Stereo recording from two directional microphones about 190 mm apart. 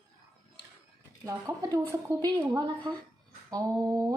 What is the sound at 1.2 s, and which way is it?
Speech, 15° right (ahead or behind).